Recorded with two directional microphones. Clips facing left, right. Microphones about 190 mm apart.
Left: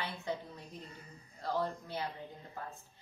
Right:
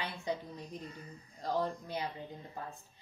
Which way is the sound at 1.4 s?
15° right (ahead or behind).